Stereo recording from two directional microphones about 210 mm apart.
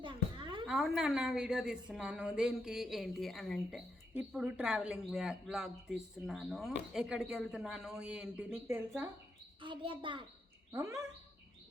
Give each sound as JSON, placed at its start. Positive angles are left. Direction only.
{"t": 0.0, "sound": "a sound", "side_deg": -25}
{"t": 0.7, "sound": "a woman's voice", "side_deg": 0}
{"t": 9.6, "sound": "a child's voice", "side_deg": -25}
{"t": 10.7, "sound": "speech", "side_deg": -15}